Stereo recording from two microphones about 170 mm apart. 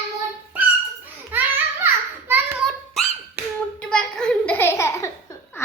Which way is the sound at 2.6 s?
Centre (ahead or behind).